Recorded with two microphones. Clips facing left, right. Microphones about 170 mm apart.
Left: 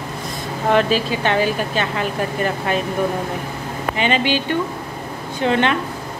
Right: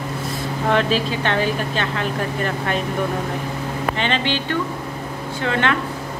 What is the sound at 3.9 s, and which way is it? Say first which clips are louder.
A woman's voice: left 6 dB; 10° left (ahead or behind).